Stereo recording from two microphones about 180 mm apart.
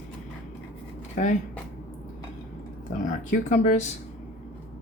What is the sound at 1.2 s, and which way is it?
Speech, 45° left (ahead or behind).